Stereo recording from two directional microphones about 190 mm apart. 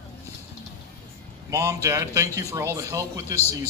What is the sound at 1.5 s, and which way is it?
A man's voice, 15° right (ahead or behind).